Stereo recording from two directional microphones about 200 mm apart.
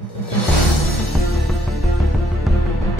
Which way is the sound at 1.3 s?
Centre (ahead or behind).